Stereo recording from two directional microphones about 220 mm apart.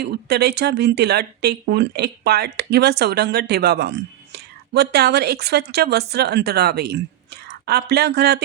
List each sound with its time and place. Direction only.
0.0 s speech: 45° right (ahead or behind)